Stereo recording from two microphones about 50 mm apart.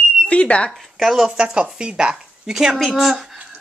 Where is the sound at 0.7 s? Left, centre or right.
Centre.